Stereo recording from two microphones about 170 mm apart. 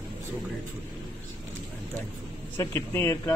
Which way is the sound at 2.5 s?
15° left (ahead or behind).